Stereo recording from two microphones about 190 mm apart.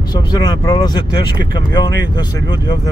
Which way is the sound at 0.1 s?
20° left (ahead or behind).